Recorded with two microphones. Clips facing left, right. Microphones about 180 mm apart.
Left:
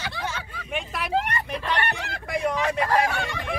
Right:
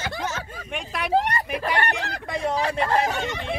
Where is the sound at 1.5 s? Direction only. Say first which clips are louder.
Right 1 dB; 10° right (ahead or behind).